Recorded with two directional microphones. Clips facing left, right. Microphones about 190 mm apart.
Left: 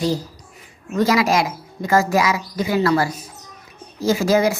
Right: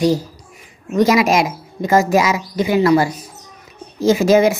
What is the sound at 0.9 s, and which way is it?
A woman's voice, 20° right (ahead or behind).